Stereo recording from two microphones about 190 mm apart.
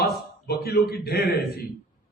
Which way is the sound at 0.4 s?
55° left (ahead or behind).